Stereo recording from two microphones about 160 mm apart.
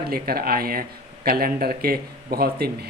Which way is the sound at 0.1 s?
70° right (ahead or behind).